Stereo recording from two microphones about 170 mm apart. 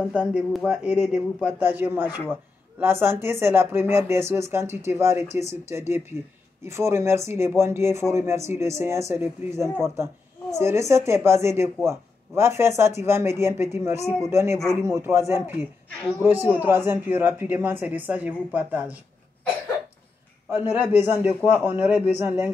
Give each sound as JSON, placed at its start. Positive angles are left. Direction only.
{"t": 0.1, "sound": "speech", "side_deg": -5}
{"t": 20.4, "sound": "speech", "side_deg": -15}